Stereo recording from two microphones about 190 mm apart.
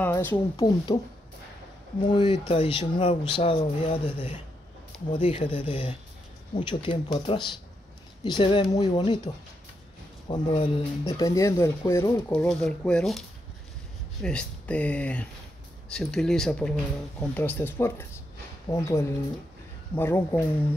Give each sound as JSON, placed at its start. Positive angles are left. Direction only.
{"t": 0.0, "sound": "speech", "side_deg": 10}
{"t": 2.0, "sound": "speech", "side_deg": 25}
{"t": 5.1, "sound": "speech", "side_deg": 25}
{"t": 14.2, "sound": "speech", "side_deg": 5}